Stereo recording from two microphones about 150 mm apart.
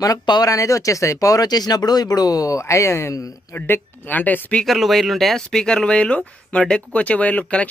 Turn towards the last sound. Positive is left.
turn(degrees=10)  # may be behind; listen again after turning